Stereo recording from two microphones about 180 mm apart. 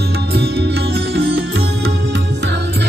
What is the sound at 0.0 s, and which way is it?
Music, 60° right (ahead or behind).